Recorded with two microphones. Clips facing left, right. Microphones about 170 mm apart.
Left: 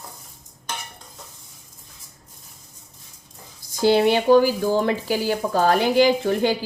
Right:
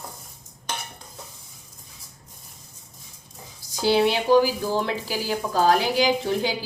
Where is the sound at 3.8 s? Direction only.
50° left (ahead or behind).